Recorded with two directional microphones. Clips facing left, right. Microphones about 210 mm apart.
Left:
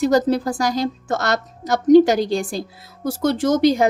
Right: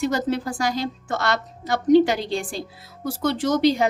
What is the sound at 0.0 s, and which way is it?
A woman's voice, 40° left (ahead or behind).